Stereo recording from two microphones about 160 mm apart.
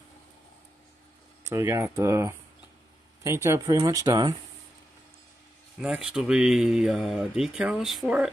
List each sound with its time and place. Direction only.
1.4 s speech: 15° right (ahead or behind)
5.8 s speech: 5° right (ahead or behind)